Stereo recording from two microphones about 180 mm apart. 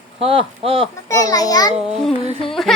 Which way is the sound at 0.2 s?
30° right (ahead or behind).